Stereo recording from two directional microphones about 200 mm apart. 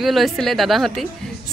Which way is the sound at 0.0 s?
Centre (ahead or behind).